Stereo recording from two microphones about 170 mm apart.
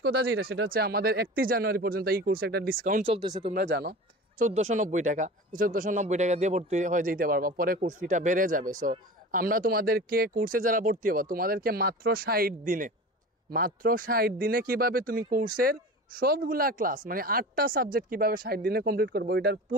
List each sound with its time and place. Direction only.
0.0 s speech: 70° right (ahead or behind)
3.1 s speech: 25° right (ahead or behind)
3.5 s speech: 70° right (ahead or behind)
4.4 s speech: 50° right (ahead or behind); by 19.6 s 70° right (ahead or behind)